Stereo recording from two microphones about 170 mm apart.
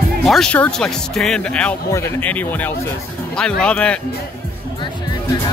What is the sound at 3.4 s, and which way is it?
Speech, 5° left (ahead or behind).